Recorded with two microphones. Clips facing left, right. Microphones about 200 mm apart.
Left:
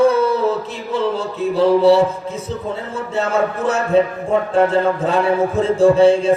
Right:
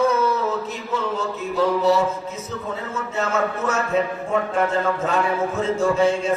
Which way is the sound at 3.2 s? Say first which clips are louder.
Left 5 dB; 30° left (ahead or behind).